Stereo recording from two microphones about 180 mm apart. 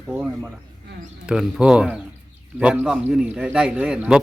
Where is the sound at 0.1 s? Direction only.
10° right (ahead or behind).